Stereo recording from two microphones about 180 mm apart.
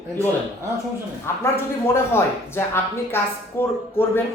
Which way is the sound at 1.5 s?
15° left (ahead or behind).